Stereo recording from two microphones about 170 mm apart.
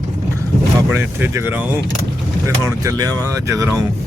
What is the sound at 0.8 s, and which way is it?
Speech, 15° right (ahead or behind).